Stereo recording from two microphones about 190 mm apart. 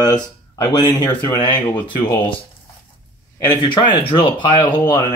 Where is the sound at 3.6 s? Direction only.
25° left (ahead or behind).